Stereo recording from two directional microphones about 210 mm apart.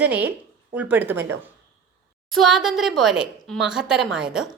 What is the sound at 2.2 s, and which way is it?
A woman's voice, centre (ahead or behind).